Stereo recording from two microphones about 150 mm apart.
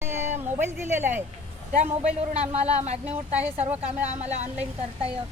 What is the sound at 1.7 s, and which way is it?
A man's voice, 50° right (ahead or behind).